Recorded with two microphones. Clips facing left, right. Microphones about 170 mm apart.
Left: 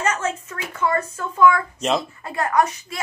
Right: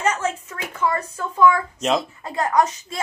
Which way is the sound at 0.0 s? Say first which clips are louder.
Right 1 dB; 10° right (ahead or behind).